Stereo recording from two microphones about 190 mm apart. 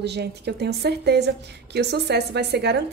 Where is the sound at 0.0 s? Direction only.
60° right (ahead or behind).